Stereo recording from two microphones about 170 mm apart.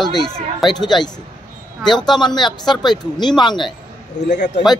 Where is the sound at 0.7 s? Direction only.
25° left (ahead or behind).